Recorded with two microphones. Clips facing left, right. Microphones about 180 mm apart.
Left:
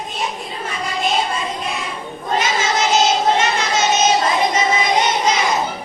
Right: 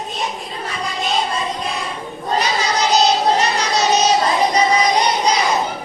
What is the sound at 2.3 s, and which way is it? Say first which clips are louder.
Child singing: even; 35° right (ahead or behind).